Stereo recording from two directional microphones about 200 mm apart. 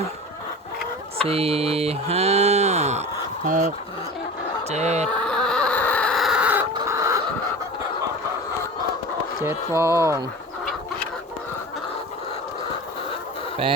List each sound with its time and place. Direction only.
1.2 s speech: 30° right (ahead or behind)
4.7 s speech: 35° right (ahead or behind)
5.0 s a sound: 5° left (ahead or behind)
6.7 s chicken: 15° right (ahead or behind)
9.4 s speech: 15° right (ahead or behind)